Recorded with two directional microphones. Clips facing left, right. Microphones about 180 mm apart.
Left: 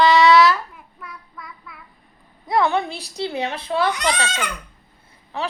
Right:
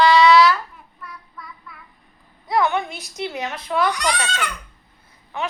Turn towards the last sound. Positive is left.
turn(degrees=35)  # may be behind; listen again after turning